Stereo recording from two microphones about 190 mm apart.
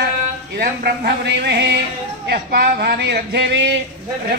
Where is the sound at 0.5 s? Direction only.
50° right (ahead or behind).